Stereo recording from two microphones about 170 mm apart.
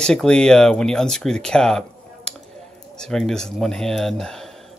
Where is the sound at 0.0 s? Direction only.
5° left (ahead or behind).